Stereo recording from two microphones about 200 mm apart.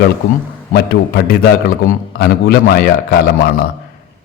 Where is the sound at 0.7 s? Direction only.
50° left (ahead or behind).